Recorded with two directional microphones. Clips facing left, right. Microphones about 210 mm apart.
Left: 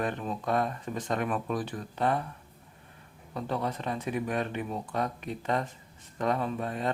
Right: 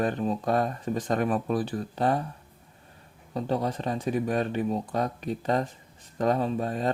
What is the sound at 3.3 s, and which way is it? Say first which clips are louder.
Speech: right 4 dB; 35° right (ahead or behind).